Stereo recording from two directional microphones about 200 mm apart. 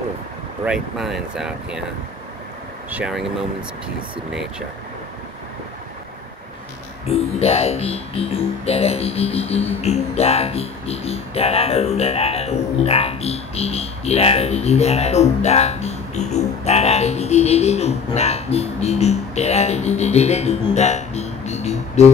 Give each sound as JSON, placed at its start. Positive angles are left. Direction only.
{"t": 0.7, "sound": "speech", "side_deg": 0}
{"t": 2.9, "sound": "speech", "side_deg": -5}
{"t": 4.3, "sound": "speech", "side_deg": -5}
{"t": 7.1, "sound": "speech", "side_deg": 30}
{"t": 20.7, "sound": "music", "side_deg": 35}